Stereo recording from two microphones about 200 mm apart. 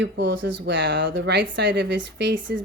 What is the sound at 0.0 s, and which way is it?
Speech, 65° right (ahead or behind).